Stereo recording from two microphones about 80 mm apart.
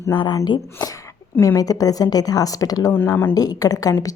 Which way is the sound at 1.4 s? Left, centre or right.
Left.